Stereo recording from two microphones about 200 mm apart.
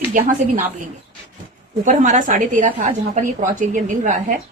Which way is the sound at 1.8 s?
40° right (ahead or behind).